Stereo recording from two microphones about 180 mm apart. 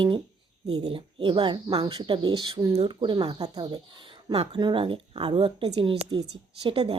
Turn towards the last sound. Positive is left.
turn(degrees=-30)  # may be behind; listen again after turning